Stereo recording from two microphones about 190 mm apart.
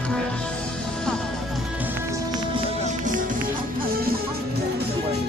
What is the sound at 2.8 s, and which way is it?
Music, 45° right (ahead or behind).